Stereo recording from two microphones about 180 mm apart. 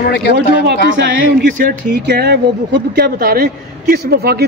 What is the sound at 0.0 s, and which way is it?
Speech, 70° left (ahead or behind).